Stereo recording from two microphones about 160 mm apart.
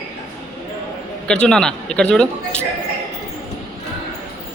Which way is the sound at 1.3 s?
5° left (ahead or behind).